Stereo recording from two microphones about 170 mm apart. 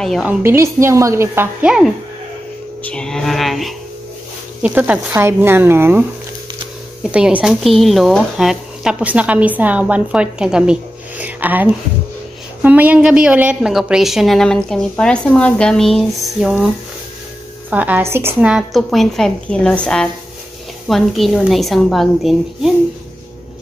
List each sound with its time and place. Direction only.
0.0 s a woman's voice: centre (ahead or behind)
17.6 s a woman's voice: 10° right (ahead or behind)